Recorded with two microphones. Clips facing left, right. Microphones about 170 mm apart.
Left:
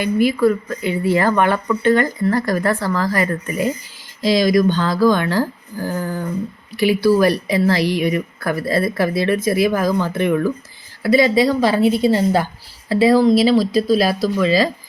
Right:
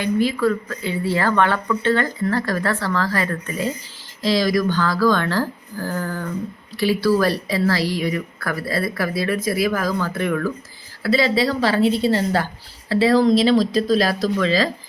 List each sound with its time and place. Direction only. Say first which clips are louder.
0.0 s a woman's voice: left 4 dB; 10° left (ahead or behind)